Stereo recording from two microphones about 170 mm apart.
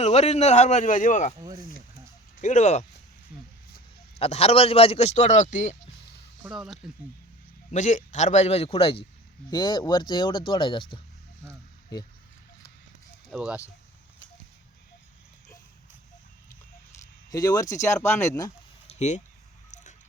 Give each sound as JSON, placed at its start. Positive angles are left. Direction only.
{"t": 0.0, "sound": "a man's voice", "side_deg": 40}
{"t": 1.4, "sound": "speech", "side_deg": -20}
{"t": 2.4, "sound": "a man's voice", "side_deg": 45}
{"t": 4.2, "sound": "a man's voice", "side_deg": 35}
{"t": 6.4, "sound": "speech", "side_deg": 0}
{"t": 7.7, "sound": "a man's voice", "side_deg": 45}
{"t": 13.3, "sound": "speech", "side_deg": -5}
{"t": 17.3, "sound": "speech", "side_deg": 20}
{"t": 18.9, "sound": "a sound", "side_deg": 40}